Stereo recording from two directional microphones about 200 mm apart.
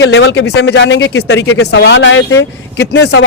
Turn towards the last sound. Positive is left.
turn(degrees=60)  # may be behind; listen again after turning